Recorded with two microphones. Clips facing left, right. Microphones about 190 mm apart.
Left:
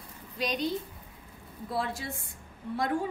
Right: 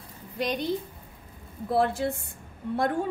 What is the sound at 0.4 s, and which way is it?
Speech, 55° right (ahead or behind).